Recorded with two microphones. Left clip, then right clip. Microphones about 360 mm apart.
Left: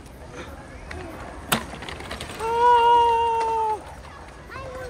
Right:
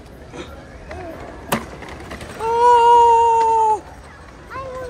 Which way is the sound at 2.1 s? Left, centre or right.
Centre.